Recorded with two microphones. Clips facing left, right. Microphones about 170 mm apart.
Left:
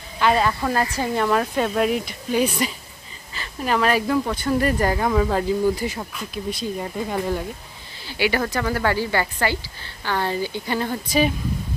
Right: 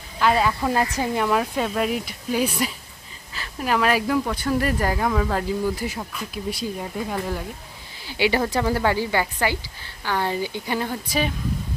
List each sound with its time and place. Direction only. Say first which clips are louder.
0.2 s speech: left 1 dB; 5° right (ahead or behind)
0.7 s speech: even; 20° right (ahead or behind)
1.2 s speech: left 3 dB; 5° right (ahead or behind)
8.1 s speech: right 1 dB; 25° right (ahead or behind)